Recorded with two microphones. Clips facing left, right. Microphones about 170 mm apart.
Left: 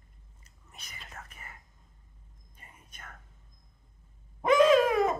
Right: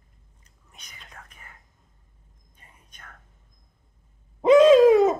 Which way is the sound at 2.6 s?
5° left (ahead or behind).